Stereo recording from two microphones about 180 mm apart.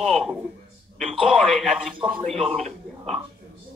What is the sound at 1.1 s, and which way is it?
Speech, 30° right (ahead or behind).